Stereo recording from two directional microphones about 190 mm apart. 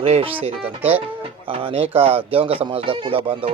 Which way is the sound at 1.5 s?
30° right (ahead or behind).